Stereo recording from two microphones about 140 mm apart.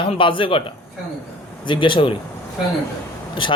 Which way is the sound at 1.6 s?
35° left (ahead or behind).